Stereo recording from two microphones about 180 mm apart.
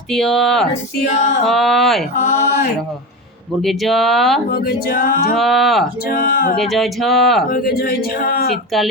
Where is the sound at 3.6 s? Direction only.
Centre (ahead or behind).